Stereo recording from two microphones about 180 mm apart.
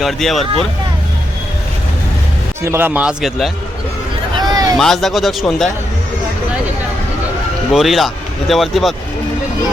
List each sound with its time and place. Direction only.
0.0 s speech: centre (ahead or behind)
2.6 s speech: 10° right (ahead or behind)
4.4 s a sound: 20° right (ahead or behind)
4.8 s speech: centre (ahead or behind)
7.7 s speech: centre (ahead or behind)